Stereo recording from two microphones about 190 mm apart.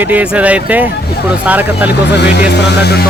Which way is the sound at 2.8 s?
60° left (ahead or behind).